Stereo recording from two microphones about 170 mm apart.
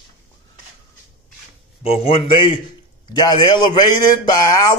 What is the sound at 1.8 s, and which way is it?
Speech, 35° left (ahead or behind).